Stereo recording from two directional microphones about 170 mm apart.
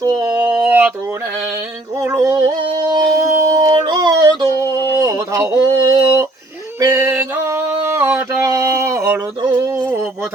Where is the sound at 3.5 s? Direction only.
25° right (ahead or behind).